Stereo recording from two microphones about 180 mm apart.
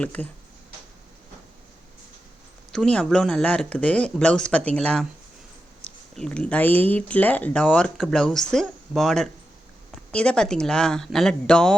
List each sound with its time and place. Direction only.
0.0 s speech: 10° left (ahead or behind)
2.7 s speech: 5° left (ahead or behind)